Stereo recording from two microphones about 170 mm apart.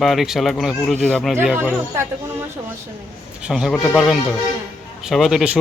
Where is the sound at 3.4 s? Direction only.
Centre (ahead or behind).